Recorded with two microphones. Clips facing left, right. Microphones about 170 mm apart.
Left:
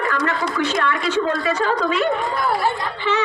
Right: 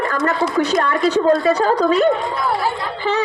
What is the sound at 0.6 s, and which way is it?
A woman's voice, 40° right (ahead or behind).